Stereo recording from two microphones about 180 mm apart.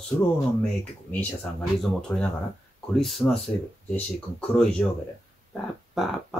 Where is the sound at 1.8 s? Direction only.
5° left (ahead or behind).